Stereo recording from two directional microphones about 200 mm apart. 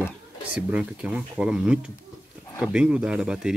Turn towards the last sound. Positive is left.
turn(degrees=-5)  # may be behind; listen again after turning